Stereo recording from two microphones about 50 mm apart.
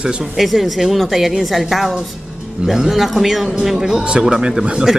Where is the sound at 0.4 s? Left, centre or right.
Centre.